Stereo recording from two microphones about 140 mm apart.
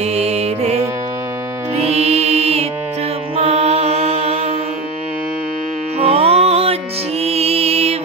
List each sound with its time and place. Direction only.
0.0 s music: 50° right (ahead or behind)
3.3 s mantra: 50° right (ahead or behind)
5.9 s music: 45° right (ahead or behind)